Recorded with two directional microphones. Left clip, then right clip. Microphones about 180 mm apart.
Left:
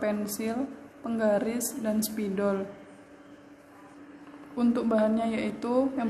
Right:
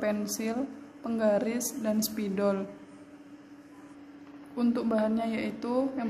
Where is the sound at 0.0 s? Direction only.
15° right (ahead or behind).